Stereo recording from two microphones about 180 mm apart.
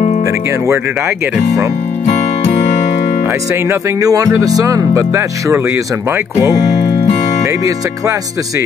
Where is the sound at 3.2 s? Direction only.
15° right (ahead or behind).